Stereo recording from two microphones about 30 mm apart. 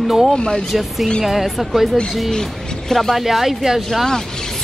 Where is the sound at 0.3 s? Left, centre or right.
Left.